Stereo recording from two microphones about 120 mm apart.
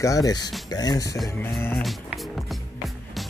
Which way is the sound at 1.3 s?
15° left (ahead or behind).